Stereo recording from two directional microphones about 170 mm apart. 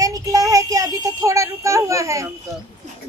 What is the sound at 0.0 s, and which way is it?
Child singing, 20° right (ahead or behind).